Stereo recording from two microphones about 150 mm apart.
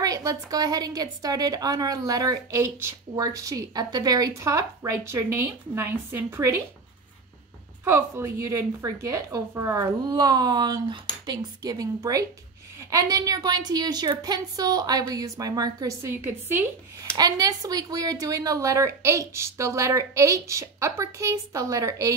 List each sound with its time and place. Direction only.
0.0 s a woman's voice: 25° right (ahead or behind)
7.8 s a woman's voice: 20° right (ahead or behind)